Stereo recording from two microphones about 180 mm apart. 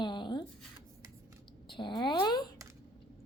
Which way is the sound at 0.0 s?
25° left (ahead or behind).